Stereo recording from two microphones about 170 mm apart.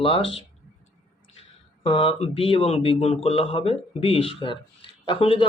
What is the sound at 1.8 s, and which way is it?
Speech, 30° left (ahead or behind).